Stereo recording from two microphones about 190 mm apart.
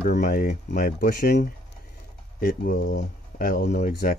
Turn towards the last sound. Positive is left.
turn(degrees=50)  # may be behind; listen again after turning